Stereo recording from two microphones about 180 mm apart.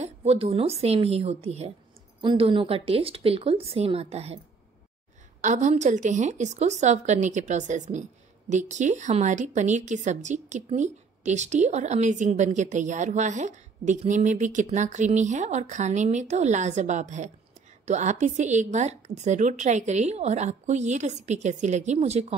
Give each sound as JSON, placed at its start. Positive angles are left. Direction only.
{"t": 0.0, "sound": "speech", "side_deg": -35}
{"t": 5.4, "sound": "speech", "side_deg": -40}